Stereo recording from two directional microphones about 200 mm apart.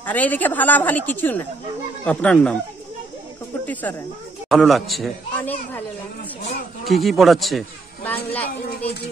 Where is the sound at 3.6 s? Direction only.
10° left (ahead or behind).